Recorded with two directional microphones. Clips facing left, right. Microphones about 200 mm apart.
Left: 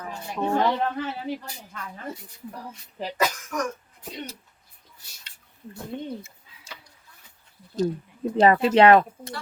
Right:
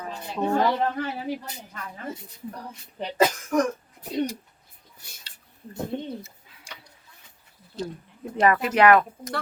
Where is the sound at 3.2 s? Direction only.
30° right (ahead or behind).